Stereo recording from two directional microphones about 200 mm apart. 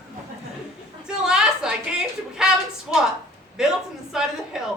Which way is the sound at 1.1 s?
5° right (ahead or behind).